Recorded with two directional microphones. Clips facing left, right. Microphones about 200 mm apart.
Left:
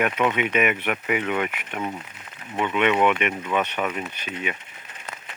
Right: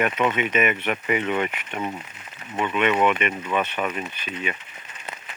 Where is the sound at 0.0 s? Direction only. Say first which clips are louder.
Even; 10° left (ahead or behind).